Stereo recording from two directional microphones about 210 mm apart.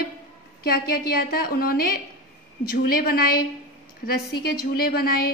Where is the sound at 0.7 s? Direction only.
45° left (ahead or behind).